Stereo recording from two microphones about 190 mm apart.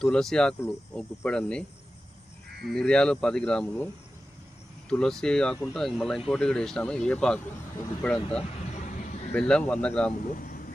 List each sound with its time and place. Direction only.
0.0 s speech: centre (ahead or behind)
2.6 s speech: 5° left (ahead or behind)
4.9 s speech: 5° left (ahead or behind)
8.7 s vehicle: 40° left (ahead or behind)
9.3 s speech: 5° left (ahead or behind)
10.2 s vehicle: 45° left (ahead or behind)